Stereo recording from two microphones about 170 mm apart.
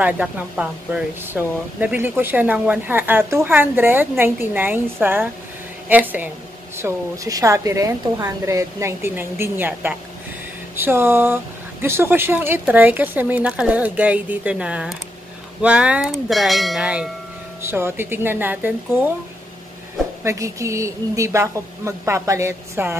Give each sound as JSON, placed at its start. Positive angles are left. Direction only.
{"t": 0.0, "sound": "speech", "side_deg": -5}
{"t": 17.6, "sound": "speech", "side_deg": -15}
{"t": 20.2, "sound": "speech", "side_deg": -20}